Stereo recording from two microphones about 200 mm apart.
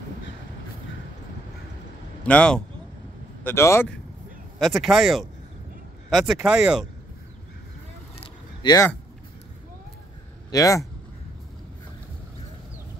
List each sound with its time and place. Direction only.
2.2 s speech: 5° left (ahead or behind)
4.6 s speech: centre (ahead or behind)
8.6 s speech: 15° left (ahead or behind)
10.5 s speech: 15° left (ahead or behind)